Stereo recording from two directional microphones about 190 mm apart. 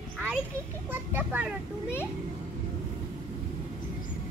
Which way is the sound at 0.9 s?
10° right (ahead or behind).